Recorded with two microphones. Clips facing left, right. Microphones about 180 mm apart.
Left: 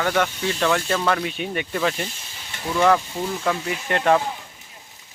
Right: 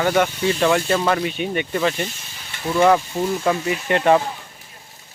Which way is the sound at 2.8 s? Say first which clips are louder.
Right 3 dB; 10° right (ahead or behind).